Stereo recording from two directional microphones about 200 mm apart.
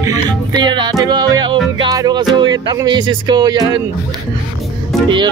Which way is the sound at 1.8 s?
20° right (ahead or behind).